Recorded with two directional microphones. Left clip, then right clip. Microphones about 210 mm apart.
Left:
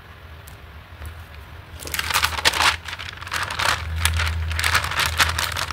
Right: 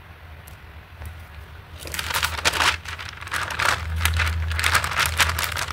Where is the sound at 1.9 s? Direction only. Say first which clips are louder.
Left 3 dB; 20° left (ahead or behind).